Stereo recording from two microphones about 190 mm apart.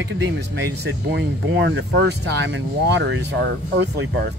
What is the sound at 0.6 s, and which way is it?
Speech, 65° right (ahead or behind).